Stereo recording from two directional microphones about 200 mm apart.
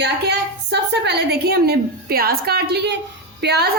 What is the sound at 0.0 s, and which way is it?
A woman's voice, 55° right (ahead or behind).